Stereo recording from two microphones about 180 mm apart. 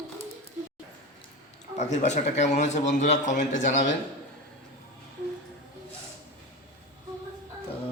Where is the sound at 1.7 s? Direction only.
40° left (ahead or behind).